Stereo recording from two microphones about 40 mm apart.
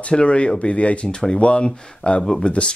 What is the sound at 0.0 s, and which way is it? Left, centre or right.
Speech, left.